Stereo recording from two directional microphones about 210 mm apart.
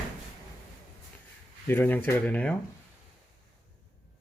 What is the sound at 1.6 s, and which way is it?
Speech, 10° left (ahead or behind).